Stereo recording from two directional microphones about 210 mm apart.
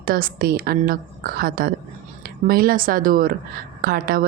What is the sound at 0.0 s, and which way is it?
A woman's voice, 45° right (ahead or behind).